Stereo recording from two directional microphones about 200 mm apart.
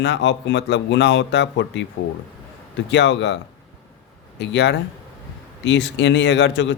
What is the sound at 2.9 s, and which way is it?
Speech, 60° left (ahead or behind).